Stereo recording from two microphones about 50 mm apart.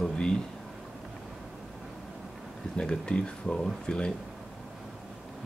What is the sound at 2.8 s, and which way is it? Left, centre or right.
Speech, centre.